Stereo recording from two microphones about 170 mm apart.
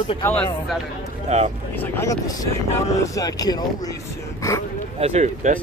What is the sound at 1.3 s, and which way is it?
Speech, 40° right (ahead or behind).